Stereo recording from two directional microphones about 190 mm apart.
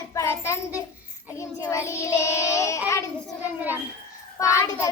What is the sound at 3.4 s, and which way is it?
Speech, 10° right (ahead or behind).